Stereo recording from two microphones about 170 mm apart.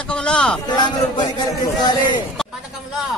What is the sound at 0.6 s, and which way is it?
A man's voice, 25° left (ahead or behind).